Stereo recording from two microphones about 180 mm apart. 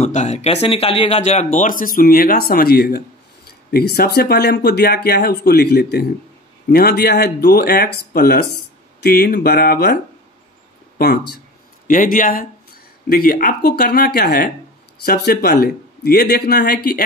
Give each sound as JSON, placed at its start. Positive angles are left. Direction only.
{"t": 0.0, "sound": "speech", "side_deg": 40}
{"t": 11.0, "sound": "speech", "side_deg": 60}
{"t": 11.9, "sound": "speech", "side_deg": 45}